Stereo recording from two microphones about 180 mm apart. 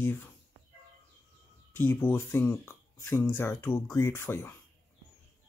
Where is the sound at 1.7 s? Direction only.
10° left (ahead or behind).